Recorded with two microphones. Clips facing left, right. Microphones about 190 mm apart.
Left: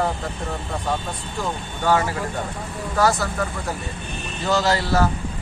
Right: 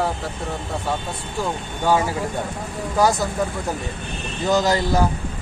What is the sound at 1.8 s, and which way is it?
Speech, 10° right (ahead or behind).